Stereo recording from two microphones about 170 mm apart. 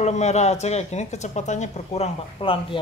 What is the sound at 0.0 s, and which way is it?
Speech, 40° left (ahead or behind).